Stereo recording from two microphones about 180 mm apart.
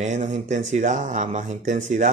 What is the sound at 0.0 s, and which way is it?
Speech, 40° right (ahead or behind).